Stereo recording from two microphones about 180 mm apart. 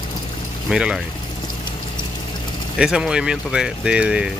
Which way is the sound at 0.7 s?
5° right (ahead or behind).